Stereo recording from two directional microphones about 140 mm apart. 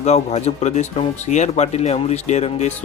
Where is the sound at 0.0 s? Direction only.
50° left (ahead or behind).